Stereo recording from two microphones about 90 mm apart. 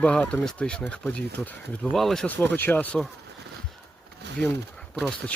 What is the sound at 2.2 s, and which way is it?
Speech, 20° left (ahead or behind).